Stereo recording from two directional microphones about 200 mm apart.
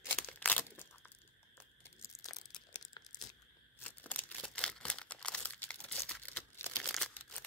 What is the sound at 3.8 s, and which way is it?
Crumpling, 10° left (ahead or behind).